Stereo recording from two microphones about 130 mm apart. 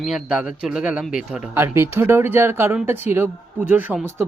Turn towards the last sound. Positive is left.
turn(degrees=-15)  # may be behind; listen again after turning